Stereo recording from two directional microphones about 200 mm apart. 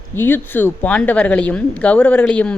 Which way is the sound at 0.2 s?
10° left (ahead or behind).